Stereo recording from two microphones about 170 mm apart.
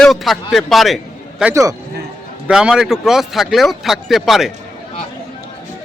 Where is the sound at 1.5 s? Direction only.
20° right (ahead or behind).